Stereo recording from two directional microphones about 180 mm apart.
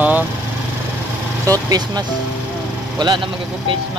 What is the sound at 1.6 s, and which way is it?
Speech, 20° right (ahead or behind).